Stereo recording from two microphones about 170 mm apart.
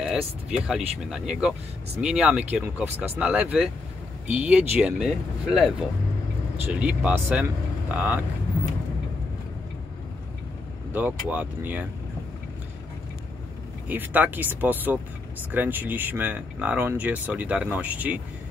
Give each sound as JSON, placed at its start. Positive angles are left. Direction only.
{"t": 0.0, "sound": "speech", "side_deg": -5}
{"t": 10.9, "sound": "speech", "side_deg": -10}
{"t": 13.8, "sound": "speech", "side_deg": -10}